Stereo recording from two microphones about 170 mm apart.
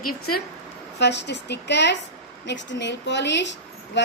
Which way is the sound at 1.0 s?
90° left.